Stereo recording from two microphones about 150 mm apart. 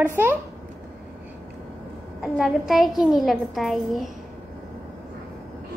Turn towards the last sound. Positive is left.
turn(degrees=0)  # may be behind; listen again after turning